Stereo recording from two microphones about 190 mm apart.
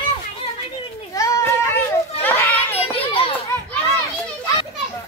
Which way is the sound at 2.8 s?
30° left (ahead or behind).